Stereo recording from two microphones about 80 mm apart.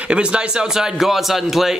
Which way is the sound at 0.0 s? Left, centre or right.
Centre.